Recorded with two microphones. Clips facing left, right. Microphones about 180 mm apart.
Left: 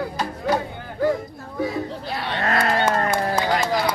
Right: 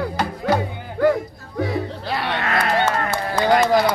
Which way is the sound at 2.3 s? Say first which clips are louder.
Left 3 dB; 40° left (ahead or behind).